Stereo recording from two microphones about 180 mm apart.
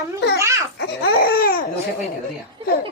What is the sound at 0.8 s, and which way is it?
Laughter, 55° left (ahead or behind).